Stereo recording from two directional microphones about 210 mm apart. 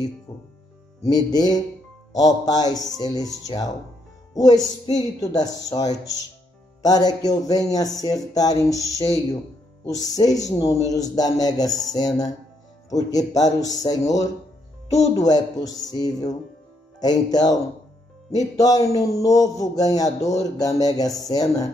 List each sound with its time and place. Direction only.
0.3 s speech: 20° left (ahead or behind)
2.8 s speech: centre (ahead or behind)
3.4 s speech: 20° left (ahead or behind)
13.3 s speech: 15° left (ahead or behind)